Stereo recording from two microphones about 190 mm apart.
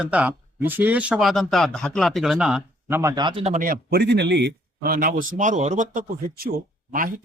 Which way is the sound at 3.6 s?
55° right (ahead or behind).